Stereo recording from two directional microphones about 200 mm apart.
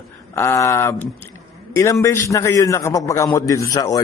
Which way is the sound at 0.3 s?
15° left (ahead or behind).